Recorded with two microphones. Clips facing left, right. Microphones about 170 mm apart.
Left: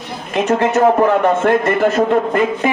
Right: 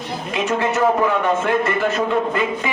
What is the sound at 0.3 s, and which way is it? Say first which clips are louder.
A man's voice: left 6 dB; 45° left (ahead or behind).